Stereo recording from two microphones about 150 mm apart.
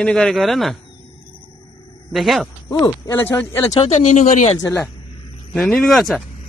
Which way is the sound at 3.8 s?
45° left (ahead or behind).